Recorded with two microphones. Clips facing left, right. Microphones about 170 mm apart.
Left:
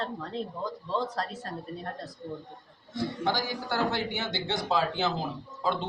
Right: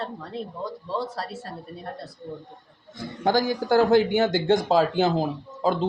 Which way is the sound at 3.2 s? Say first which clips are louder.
Right 11 dB; 45° right (ahead or behind).